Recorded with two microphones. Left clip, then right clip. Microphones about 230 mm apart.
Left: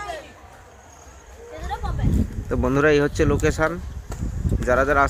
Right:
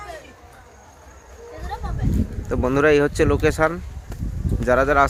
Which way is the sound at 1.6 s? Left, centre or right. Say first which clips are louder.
Left 1 dB; centre.